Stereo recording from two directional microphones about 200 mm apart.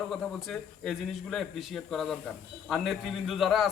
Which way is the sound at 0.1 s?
Centre (ahead or behind).